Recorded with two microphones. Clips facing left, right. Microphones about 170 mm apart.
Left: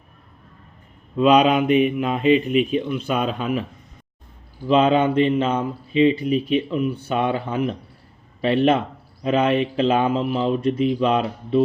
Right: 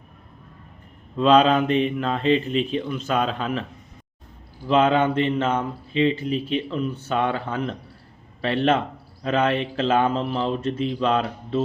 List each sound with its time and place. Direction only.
1.1 s speech: 10° left (ahead or behind)
4.7 s speech: 15° left (ahead or behind)